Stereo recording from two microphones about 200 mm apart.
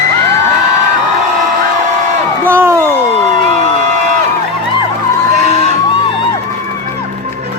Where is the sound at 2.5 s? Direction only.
10° right (ahead or behind).